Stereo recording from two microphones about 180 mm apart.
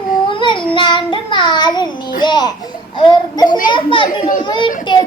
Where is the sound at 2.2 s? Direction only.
25° left (ahead or behind).